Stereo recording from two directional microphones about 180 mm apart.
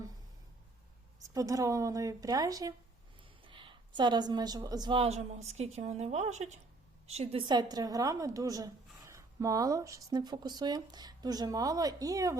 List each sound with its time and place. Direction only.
1.3 s a woman's voice: 20° right (ahead or behind)